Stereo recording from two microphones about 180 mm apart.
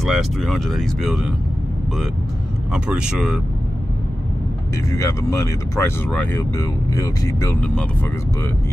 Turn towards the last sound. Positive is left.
turn(degrees=20)  # may be behind; listen again after turning